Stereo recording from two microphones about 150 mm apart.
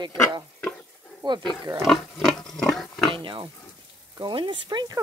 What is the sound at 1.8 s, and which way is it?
Pig, centre (ahead or behind).